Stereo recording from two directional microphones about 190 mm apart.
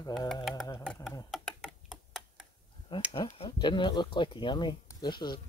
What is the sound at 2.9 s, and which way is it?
Speech, 25° left (ahead or behind).